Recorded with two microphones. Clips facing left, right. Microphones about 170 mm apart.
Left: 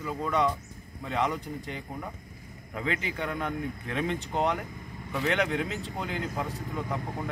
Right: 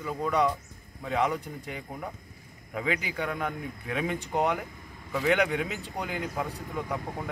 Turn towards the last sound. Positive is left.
turn(degrees=0)  # may be behind; listen again after turning